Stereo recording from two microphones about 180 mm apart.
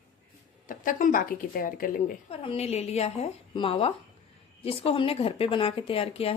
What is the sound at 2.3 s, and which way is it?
Speech, 30° left (ahead or behind).